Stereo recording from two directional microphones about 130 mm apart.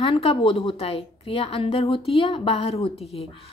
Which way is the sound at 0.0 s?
45° left (ahead or behind).